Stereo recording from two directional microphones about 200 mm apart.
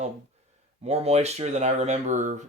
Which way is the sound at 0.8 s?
30° right (ahead or behind).